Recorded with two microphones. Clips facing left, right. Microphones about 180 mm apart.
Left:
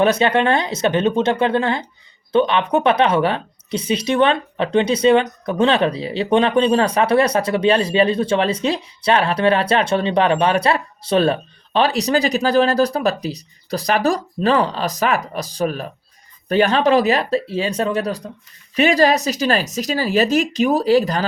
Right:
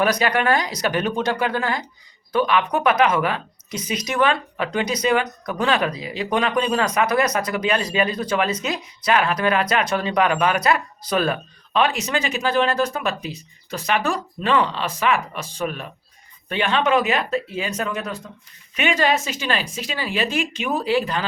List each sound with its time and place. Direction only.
0.0 s a woman's voice: 25° left (ahead or behind)